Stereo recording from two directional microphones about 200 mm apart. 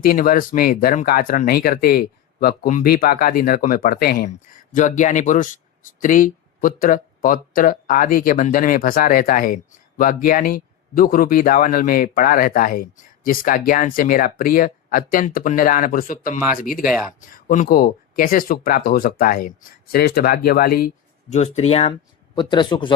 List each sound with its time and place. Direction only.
0.0 s speech: 45° left (ahead or behind)
21.3 s speech: 30° left (ahead or behind)